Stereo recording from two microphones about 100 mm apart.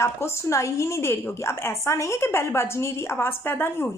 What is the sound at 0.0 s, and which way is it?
A woman's voice, 25° left (ahead or behind).